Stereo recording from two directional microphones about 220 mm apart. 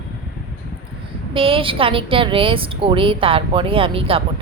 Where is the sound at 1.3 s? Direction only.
25° right (ahead or behind).